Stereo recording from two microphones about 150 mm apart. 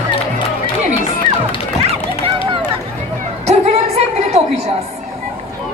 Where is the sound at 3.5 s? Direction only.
45° right (ahead or behind).